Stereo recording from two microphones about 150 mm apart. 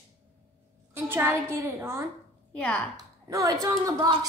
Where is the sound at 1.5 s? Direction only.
20° right (ahead or behind).